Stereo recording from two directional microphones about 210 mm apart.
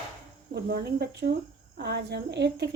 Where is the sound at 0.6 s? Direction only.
50° right (ahead or behind).